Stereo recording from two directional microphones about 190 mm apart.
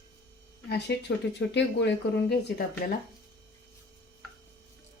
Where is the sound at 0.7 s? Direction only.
60° left (ahead or behind).